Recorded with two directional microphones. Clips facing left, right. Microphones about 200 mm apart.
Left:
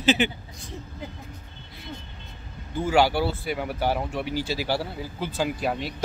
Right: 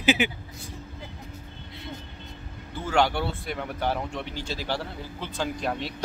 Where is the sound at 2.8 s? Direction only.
5° left (ahead or behind).